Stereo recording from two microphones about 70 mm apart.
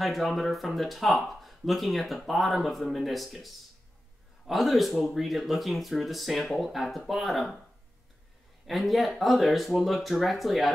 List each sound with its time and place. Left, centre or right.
0.0 s speech: centre
8.6 s speech: centre